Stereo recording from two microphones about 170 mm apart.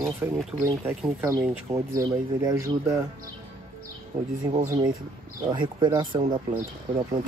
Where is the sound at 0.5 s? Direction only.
10° right (ahead or behind).